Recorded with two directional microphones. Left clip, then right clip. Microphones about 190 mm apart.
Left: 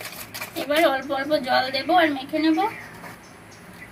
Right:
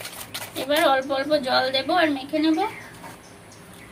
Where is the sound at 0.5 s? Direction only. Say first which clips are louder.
Right 1 dB; 10° right (ahead or behind).